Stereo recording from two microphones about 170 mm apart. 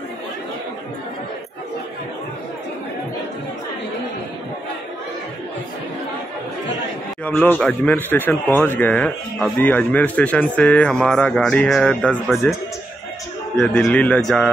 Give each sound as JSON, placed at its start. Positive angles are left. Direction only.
{"t": 7.2, "sound": "speech", "side_deg": 10}
{"t": 13.6, "sound": "a man's voice", "side_deg": 5}